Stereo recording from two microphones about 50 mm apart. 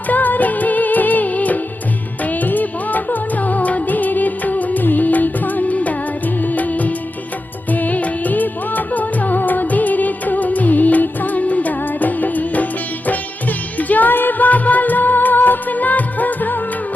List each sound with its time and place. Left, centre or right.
0.1 s music: left